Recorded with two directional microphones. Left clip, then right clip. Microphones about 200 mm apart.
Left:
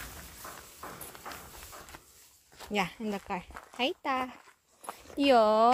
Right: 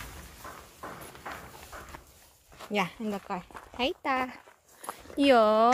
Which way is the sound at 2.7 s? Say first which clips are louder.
Right 2 dB; 5° left (ahead or behind).